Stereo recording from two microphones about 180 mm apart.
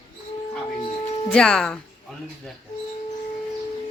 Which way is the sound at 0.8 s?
30° left (ahead or behind).